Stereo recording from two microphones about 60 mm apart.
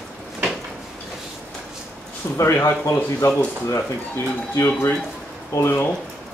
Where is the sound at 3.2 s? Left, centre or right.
Left.